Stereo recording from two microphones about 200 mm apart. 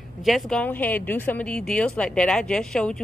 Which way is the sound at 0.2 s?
Centre (ahead or behind).